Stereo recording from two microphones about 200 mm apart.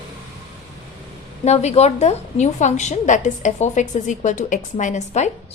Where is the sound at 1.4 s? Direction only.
35° left (ahead or behind).